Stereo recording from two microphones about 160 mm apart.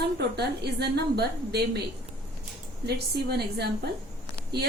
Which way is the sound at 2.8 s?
90° right.